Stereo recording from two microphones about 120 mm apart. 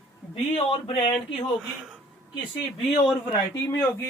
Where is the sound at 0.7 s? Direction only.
45° left (ahead or behind).